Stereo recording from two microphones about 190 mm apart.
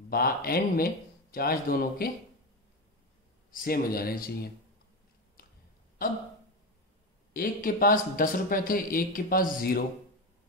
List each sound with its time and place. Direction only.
0.1 s speech: 50° left (ahead or behind)
3.5 s speech: 50° left (ahead or behind)
7.3 s speech: 50° left (ahead or behind)